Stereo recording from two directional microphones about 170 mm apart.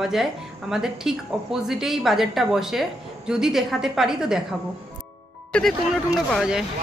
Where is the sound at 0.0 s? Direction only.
Centre (ahead or behind).